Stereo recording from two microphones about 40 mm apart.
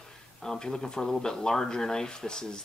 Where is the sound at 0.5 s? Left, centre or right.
Centre.